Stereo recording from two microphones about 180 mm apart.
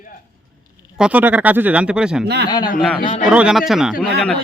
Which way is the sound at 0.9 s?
5° right (ahead or behind).